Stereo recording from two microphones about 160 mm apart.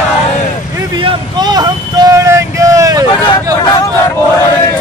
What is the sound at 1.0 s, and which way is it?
Speech, 25° right (ahead or behind).